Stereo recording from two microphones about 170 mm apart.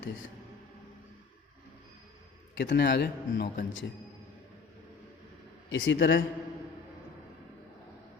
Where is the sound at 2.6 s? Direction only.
90° left.